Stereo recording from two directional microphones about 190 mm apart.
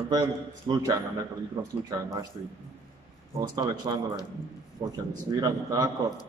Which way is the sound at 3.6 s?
25° right (ahead or behind).